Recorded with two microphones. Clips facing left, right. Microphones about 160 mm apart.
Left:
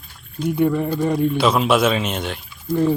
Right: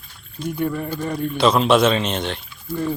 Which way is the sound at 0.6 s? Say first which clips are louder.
Left 6 dB; 20° left (ahead or behind).